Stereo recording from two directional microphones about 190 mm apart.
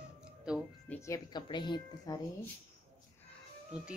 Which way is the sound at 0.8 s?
15° left (ahead or behind).